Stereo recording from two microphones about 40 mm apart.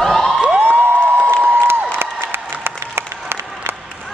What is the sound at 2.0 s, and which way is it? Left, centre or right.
Applause, right.